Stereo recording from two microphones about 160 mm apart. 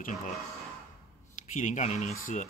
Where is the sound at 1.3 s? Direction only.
50° left (ahead or behind).